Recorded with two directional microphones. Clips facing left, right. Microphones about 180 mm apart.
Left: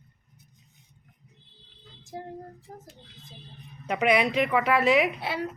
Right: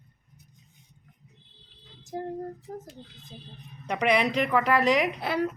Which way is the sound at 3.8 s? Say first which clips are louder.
Left 1 dB; 5° left (ahead or behind).